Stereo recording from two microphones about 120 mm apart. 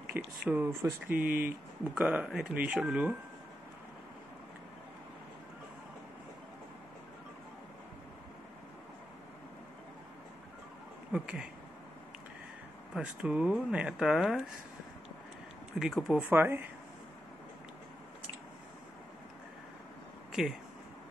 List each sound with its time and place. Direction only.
0.2 s speech: 20° right (ahead or behind)
11.1 s speech: 10° right (ahead or behind)
12.9 s speech: 5° right (ahead or behind)
15.8 s speech: centre (ahead or behind)
16.3 s speech: 15° right (ahead or behind)
20.4 s speech: 5° right (ahead or behind)